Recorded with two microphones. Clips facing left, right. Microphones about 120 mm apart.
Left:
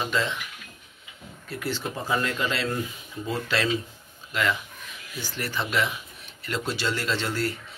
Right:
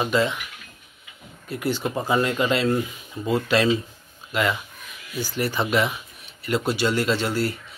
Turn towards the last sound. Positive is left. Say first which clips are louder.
# right 5 dB
turn(degrees=-10)  # may be behind; listen again after turning